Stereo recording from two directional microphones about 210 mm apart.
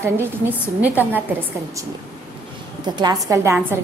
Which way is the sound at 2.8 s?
20° right (ahead or behind).